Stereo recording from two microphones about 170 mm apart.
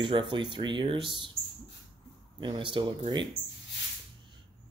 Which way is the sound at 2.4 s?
30° right (ahead or behind).